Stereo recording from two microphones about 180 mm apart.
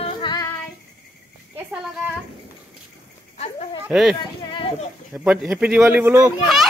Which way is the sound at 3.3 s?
35° left (ahead or behind).